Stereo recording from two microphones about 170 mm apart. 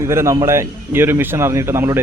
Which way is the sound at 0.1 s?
15° right (ahead or behind).